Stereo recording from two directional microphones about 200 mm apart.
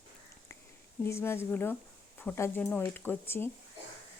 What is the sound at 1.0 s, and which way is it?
Speech, 10° left (ahead or behind).